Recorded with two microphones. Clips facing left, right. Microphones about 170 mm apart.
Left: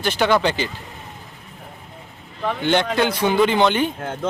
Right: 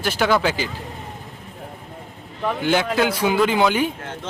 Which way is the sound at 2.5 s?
5° right (ahead or behind).